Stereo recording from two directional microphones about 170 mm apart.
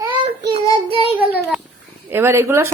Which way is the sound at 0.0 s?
25° right (ahead or behind).